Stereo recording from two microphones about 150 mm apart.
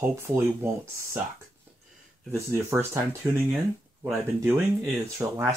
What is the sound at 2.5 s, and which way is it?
Speech, 15° right (ahead or behind).